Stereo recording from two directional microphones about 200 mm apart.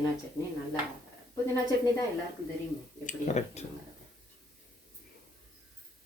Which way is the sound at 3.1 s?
35° left (ahead or behind).